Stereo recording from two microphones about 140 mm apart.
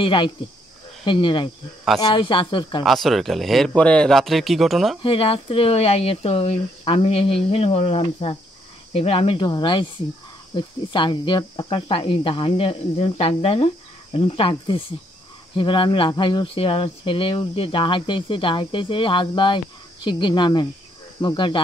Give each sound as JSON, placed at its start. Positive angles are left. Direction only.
{"t": 0.0, "sound": "speech", "side_deg": 35}
{"t": 2.8, "sound": "speech", "side_deg": 0}
{"t": 5.0, "sound": "speech", "side_deg": 40}